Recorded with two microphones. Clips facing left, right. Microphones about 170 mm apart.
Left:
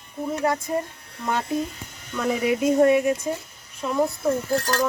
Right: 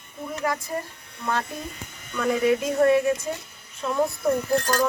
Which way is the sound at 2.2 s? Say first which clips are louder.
Right 1 dB; 5° left (ahead or behind).